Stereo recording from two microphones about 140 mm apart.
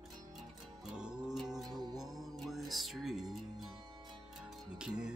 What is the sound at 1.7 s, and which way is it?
Music, 30° right (ahead or behind).